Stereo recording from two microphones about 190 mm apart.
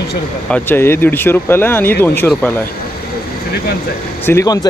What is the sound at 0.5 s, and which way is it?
Speech, 10° left (ahead or behind).